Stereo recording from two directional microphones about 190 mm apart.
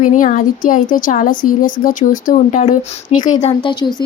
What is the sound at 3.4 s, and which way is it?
Speech, 30° left (ahead or behind).